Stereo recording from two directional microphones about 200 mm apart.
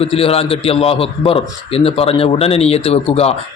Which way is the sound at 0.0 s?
30° left (ahead or behind).